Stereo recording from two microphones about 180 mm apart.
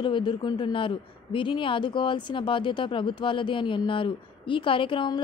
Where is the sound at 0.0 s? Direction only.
25° left (ahead or behind).